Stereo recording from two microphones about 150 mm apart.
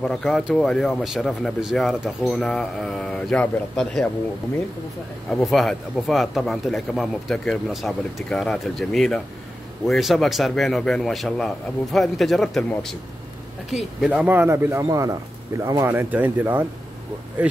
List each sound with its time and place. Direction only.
0.0 s speech: 5° left (ahead or behind)
5.3 s speech: centre (ahead or behind)
14.2 s speech: 15° right (ahead or behind)